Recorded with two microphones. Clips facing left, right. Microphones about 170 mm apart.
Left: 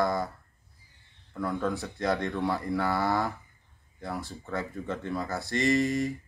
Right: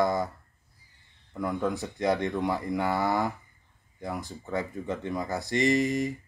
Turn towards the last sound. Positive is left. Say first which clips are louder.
# even
turn(degrees=-20)  # may be behind; listen again after turning